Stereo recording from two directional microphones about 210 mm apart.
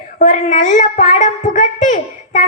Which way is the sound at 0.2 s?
35° left (ahead or behind).